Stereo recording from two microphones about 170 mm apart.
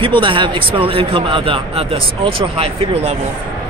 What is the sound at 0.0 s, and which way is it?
Speech, 30° right (ahead or behind).